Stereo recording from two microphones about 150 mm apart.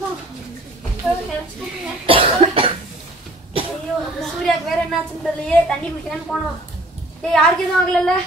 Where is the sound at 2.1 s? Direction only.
35° right (ahead or behind).